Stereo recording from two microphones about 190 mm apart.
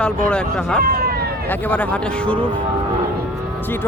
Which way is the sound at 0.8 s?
50° right (ahead or behind).